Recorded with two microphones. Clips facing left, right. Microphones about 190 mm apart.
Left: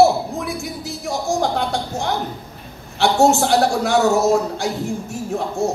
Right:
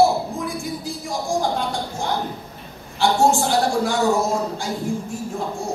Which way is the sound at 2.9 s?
75° left (ahead or behind).